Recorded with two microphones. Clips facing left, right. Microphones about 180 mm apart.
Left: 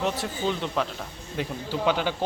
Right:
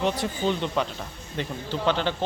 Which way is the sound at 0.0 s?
Centre (ahead or behind).